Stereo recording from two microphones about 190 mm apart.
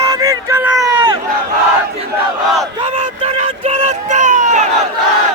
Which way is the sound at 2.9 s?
35° right (ahead or behind).